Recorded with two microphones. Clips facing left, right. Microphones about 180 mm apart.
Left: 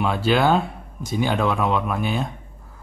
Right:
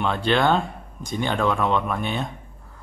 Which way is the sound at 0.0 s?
5° left (ahead or behind).